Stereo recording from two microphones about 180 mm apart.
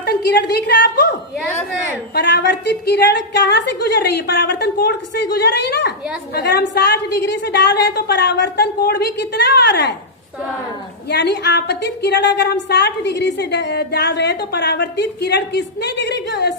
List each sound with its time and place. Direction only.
0.0 s a woman's voice: 65° left (ahead or behind)
2.1 s a woman's voice: 70° left (ahead or behind)
11.1 s a woman's voice: 70° left (ahead or behind)